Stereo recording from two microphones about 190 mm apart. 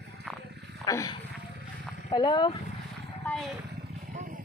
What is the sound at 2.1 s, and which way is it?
Speech, 25° left (ahead or behind).